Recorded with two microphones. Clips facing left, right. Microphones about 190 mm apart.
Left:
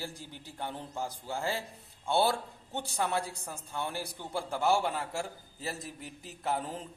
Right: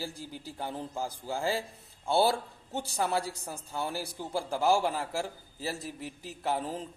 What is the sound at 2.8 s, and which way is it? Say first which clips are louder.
Speech: right 2 dB; 35° right (ahead or behind).